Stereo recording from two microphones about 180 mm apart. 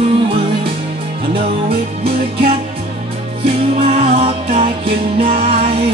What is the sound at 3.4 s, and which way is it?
Music, 30° right (ahead or behind).